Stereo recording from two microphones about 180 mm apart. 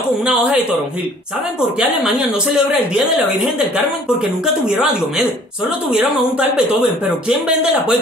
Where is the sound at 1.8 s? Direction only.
5° right (ahead or behind).